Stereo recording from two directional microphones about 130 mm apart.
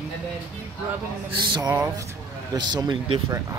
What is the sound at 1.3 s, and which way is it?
Speech, 35° right (ahead or behind).